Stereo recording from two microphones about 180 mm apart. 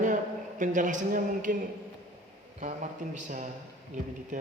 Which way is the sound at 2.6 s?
45° right (ahead or behind).